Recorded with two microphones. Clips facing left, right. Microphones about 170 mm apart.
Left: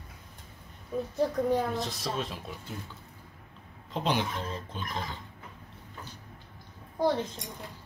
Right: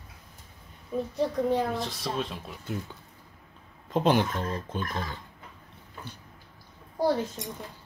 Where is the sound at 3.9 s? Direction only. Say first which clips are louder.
Right 6 dB; 50° right (ahead or behind).